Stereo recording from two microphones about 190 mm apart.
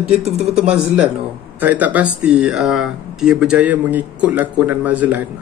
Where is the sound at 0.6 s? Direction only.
5° right (ahead or behind).